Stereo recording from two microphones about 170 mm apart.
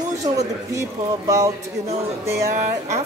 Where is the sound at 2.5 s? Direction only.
40° right (ahead or behind).